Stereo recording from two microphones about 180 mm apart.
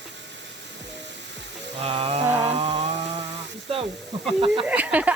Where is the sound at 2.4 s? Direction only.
25° right (ahead or behind).